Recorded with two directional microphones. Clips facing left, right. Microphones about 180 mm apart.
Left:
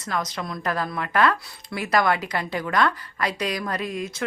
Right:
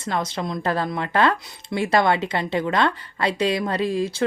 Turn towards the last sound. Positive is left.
turn(degrees=-30)  # may be behind; listen again after turning